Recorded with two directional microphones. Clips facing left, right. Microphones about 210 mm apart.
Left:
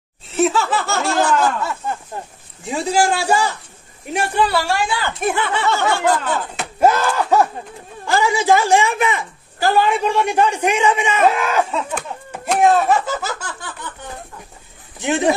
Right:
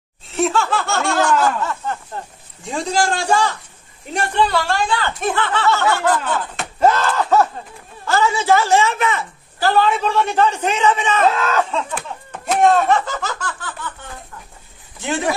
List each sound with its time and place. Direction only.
0.3 s laughter: centre (ahead or behind)
1.4 s a woman's voice: 10° left (ahead or behind)
12.4 s laughter: 5° left (ahead or behind)
15.0 s speech: 20° left (ahead or behind)